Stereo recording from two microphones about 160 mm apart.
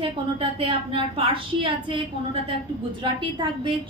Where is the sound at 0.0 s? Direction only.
35° right (ahead or behind).